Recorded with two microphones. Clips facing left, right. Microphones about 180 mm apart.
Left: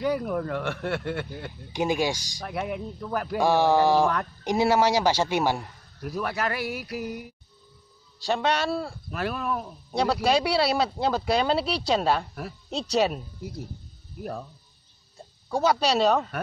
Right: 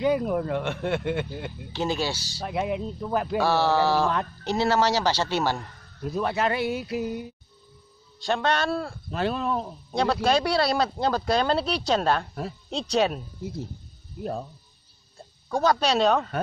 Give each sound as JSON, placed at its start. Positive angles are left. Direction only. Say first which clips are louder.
{"t": 0.0, "sound": "speech", "louder": "right 3 dB", "side_deg": -20}
{"t": 1.7, "sound": "speech", "louder": "left 2 dB", "side_deg": 15}
{"t": 2.4, "sound": "speech", "louder": "right 3 dB", "side_deg": -20}
{"t": 3.3, "sound": "speech", "louder": "left 2 dB", "side_deg": 15}
{"t": 6.0, "sound": "speech", "louder": "right 3 dB", "side_deg": -25}
{"t": 8.5, "sound": "speech", "louder": "right 1 dB", "side_deg": 5}
{"t": 9.1, "sound": "speech", "louder": "right 3 dB", "side_deg": -25}
{"t": 9.8, "sound": "speech", "louder": "even", "side_deg": 5}
{"t": 13.4, "sound": "speech", "louder": "right 3 dB", "side_deg": -25}
{"t": 15.5, "sound": "speech", "louder": "even", "side_deg": 5}